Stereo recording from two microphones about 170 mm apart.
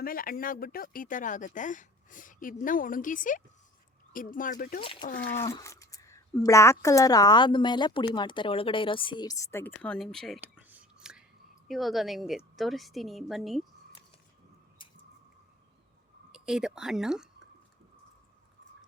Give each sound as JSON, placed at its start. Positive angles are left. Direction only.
{"t": 0.0, "sound": "speech", "side_deg": 60}
{"t": 4.8, "sound": "speech", "side_deg": 30}
{"t": 5.5, "sound": "speech", "side_deg": 20}
{"t": 10.4, "sound": "whispering", "side_deg": -10}
{"t": 11.7, "sound": "a woman's voice", "side_deg": 0}
{"t": 16.3, "sound": "speech", "side_deg": -5}